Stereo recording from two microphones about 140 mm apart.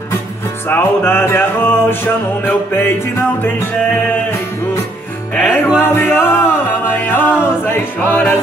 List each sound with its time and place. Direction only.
0.7 s music: 15° left (ahead or behind)
5.3 s music: 15° left (ahead or behind)